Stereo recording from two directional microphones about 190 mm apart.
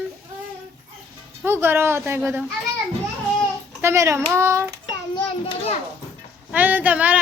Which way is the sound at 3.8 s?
15° right (ahead or behind).